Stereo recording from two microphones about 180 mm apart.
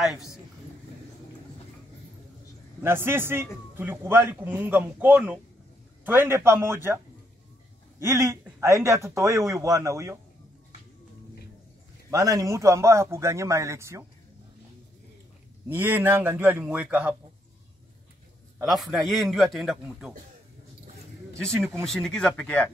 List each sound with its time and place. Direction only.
0.0 s a man's voice: centre (ahead or behind)
2.8 s a man's voice: 15° right (ahead or behind)
8.0 s a man's voice: 15° right (ahead or behind)
12.1 s a man's voice: 20° right (ahead or behind)
15.7 s a man's voice: 10° right (ahead or behind)
18.6 s a man's voice: centre (ahead or behind)
21.3 s speech: 15° right (ahead or behind)
21.8 s a man's voice: 5° left (ahead or behind)